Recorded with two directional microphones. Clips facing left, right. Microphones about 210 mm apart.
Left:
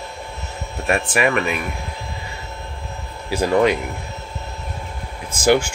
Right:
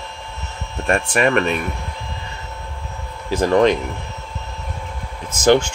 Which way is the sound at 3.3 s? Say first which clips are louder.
Right 2 dB; 10° left (ahead or behind).